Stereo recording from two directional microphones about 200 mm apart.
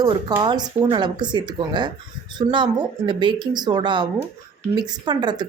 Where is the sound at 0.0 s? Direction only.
20° right (ahead or behind).